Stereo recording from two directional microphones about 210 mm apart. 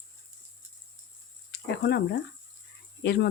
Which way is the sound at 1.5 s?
55° left (ahead or behind).